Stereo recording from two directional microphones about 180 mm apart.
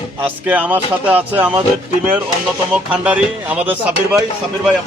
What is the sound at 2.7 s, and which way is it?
Speech, 10° right (ahead or behind).